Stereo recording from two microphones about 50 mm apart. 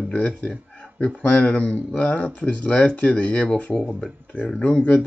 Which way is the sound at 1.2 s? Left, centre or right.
Left.